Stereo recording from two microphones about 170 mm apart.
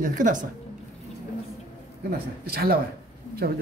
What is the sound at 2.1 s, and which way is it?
Speech, 65° right (ahead or behind).